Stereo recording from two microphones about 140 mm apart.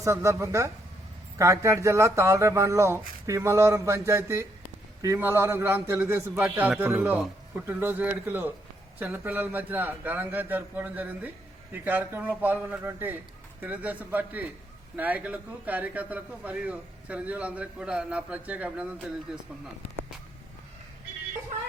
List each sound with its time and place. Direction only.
0.0 s a man's voice: 20° right (ahead or behind); by 19.4 s 5° right (ahead or behind)